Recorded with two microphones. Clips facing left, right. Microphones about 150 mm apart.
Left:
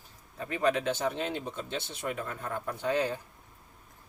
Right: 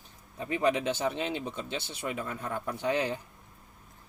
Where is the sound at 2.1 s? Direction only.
10° right (ahead or behind).